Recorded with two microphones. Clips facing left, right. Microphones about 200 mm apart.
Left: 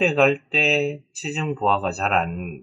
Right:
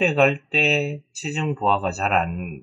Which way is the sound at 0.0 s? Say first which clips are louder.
Left 1 dB; centre (ahead or behind).